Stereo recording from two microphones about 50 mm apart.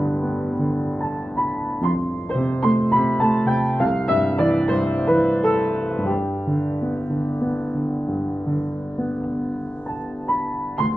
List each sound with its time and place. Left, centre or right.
1.8 s music: centre